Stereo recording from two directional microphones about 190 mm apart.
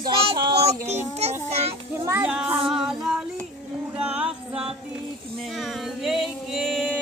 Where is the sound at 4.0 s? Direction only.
5° right (ahead or behind).